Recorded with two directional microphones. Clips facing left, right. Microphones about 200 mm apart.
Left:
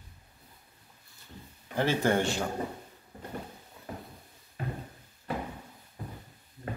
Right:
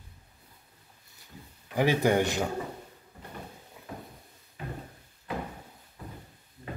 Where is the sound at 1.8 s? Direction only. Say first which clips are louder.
Right 2 dB; 15° right (ahead or behind).